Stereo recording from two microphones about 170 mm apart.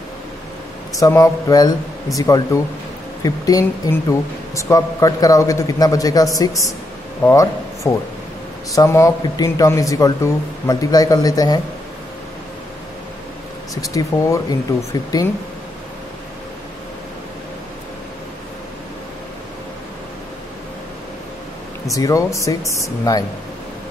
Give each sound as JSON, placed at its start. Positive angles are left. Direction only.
{"t": 0.9, "sound": "speech", "side_deg": 20}
{"t": 13.7, "sound": "speech", "side_deg": 20}
{"t": 21.9, "sound": "speech", "side_deg": 20}